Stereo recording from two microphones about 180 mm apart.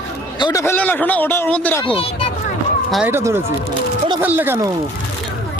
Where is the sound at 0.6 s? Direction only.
10° left (ahead or behind).